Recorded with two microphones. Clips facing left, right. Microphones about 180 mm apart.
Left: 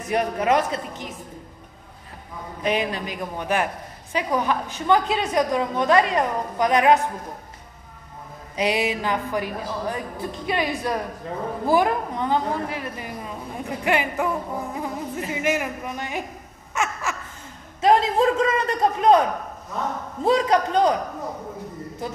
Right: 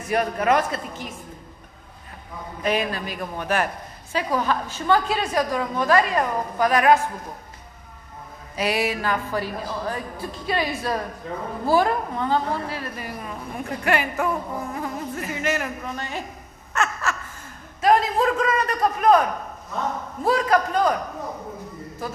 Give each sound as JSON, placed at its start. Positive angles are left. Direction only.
{"t": 0.1, "sound": "a woman's voice", "side_deg": 20}
{"t": 2.6, "sound": "a woman's voice", "side_deg": 20}
{"t": 8.5, "sound": "a woman's voice", "side_deg": 20}
{"t": 16.7, "sound": "a sound", "side_deg": 10}
{"t": 17.7, "sound": "a man's voice", "side_deg": 25}
{"t": 20.2, "sound": "a woman's voice", "side_deg": 20}